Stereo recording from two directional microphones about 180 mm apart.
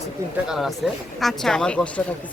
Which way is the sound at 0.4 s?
Centre (ahead or behind).